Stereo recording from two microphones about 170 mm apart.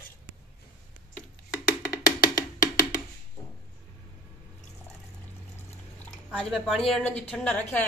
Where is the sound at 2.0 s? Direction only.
20° left (ahead or behind).